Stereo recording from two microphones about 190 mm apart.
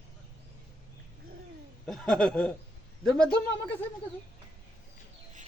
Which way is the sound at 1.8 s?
Centre (ahead or behind).